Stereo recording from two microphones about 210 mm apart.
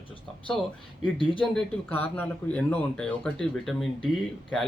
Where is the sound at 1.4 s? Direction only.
5° left (ahead or behind).